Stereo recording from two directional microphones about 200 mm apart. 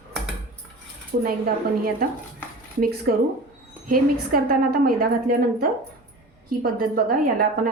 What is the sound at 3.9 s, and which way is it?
A woman's voice, 45° right (ahead or behind).